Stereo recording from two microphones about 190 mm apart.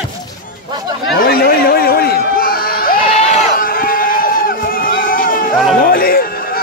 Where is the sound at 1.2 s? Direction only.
55° left (ahead or behind).